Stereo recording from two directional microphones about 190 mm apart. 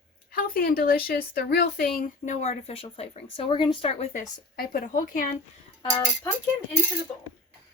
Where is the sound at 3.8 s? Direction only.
40° left (ahead or behind).